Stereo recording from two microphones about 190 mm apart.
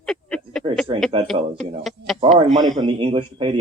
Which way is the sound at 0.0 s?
Centre (ahead or behind).